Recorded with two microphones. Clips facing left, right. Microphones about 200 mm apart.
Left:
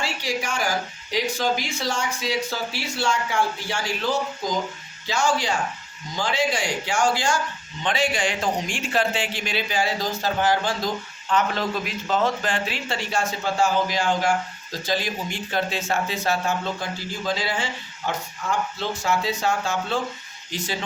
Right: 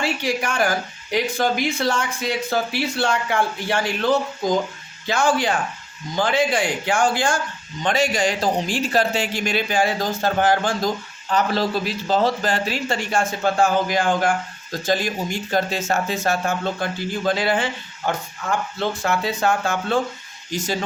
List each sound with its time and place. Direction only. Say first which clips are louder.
0.0 s speech: right 5 dB; 55° right (ahead or behind)
7.8 s a man's voice: right 4 dB; 45° right (ahead or behind)
11.3 s a man's voice: right 3 dB; 35° right (ahead or behind); by 20.0 s 55° right (ahead or behind)
20.5 s a man's voice: right 5 dB; 45° right (ahead or behind)